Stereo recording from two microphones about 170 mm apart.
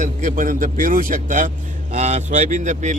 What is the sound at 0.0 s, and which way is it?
A man's voice, 50° right (ahead or behind).